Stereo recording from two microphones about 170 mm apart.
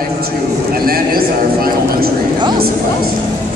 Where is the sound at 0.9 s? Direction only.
60° right (ahead or behind).